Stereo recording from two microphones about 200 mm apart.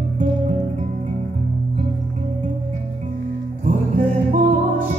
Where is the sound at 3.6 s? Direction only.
40° right (ahead or behind).